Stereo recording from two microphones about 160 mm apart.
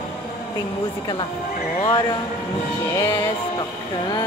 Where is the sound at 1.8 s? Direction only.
30° left (ahead or behind).